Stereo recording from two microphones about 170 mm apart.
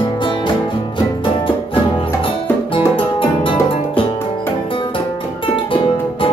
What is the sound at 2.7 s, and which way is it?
Music, 30° left (ahead or behind).